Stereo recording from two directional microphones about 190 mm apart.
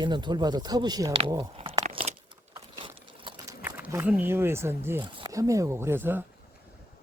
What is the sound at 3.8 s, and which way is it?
Speech, 10° right (ahead or behind).